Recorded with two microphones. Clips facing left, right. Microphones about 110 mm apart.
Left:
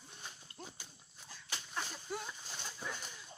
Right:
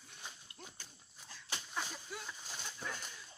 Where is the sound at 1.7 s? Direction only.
5° right (ahead or behind).